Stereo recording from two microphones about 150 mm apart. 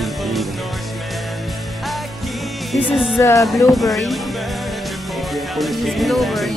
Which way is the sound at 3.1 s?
20° left (ahead or behind).